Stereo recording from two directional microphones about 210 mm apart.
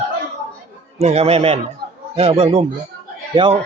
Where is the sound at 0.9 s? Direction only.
30° right (ahead or behind).